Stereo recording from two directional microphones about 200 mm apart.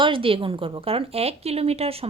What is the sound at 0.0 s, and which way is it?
Speech, 25° right (ahead or behind).